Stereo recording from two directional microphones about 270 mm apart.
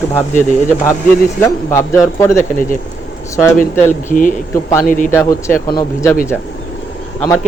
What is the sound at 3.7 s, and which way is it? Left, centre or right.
Speech, centre.